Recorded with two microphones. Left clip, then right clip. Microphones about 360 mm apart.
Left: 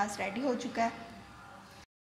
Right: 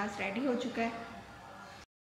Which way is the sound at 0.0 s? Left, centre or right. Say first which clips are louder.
Left 2 dB; centre.